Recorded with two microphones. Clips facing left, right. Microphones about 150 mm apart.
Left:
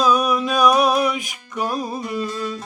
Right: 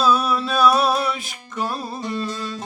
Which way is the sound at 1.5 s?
15° left (ahead or behind).